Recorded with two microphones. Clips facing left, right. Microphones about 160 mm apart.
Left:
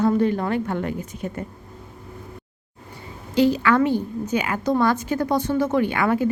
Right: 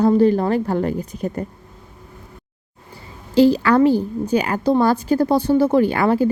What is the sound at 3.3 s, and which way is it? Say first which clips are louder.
A woman's voice: right 4 dB; 35° right (ahead or behind).